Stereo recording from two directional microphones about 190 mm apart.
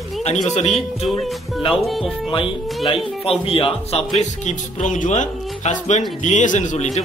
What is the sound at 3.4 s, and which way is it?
Speech, 30° left (ahead or behind).